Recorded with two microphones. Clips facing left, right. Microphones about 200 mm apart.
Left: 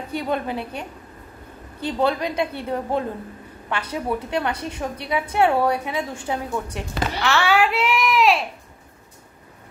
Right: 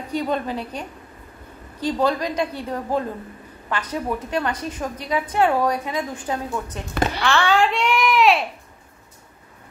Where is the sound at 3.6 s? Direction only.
10° left (ahead or behind).